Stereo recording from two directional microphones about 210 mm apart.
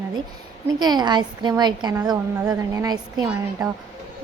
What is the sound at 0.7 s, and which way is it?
Speech, 20° right (ahead or behind).